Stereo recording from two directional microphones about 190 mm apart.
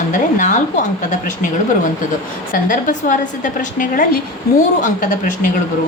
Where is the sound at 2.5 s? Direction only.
45° left (ahead or behind).